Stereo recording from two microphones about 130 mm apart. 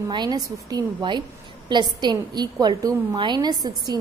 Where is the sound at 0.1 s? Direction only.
35° right (ahead or behind).